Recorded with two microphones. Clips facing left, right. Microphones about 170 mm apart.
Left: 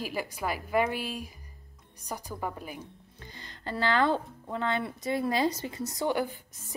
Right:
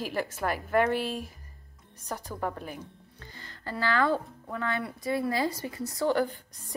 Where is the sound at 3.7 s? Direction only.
25° left (ahead or behind).